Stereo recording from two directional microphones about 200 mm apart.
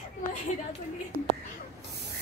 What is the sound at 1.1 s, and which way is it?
Whispering, 50° right (ahead or behind).